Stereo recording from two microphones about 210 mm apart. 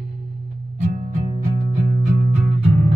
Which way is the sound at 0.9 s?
35° right (ahead or behind).